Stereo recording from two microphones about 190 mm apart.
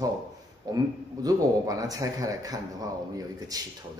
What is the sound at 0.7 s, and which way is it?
A man's voice, 20° right (ahead or behind).